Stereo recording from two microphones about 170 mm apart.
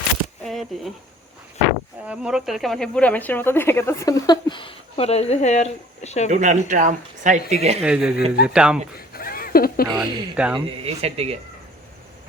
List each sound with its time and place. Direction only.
0.4 s speech: centre (ahead or behind)
2.0 s speech: 5° right (ahead or behind); by 6.3 s 40° left (ahead or behind)
6.3 s speech: 45° right (ahead or behind)
7.8 s speech: 5° right (ahead or behind)
9.0 s a sound: 60° left (ahead or behind)
10.0 s speech: 5° right (ahead or behind)
10.8 s speech: 35° right (ahead or behind)